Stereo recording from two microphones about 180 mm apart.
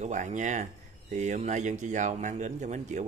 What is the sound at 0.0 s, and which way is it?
Speech, 40° right (ahead or behind).